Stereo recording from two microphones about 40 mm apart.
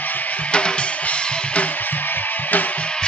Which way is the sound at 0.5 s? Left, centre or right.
Left.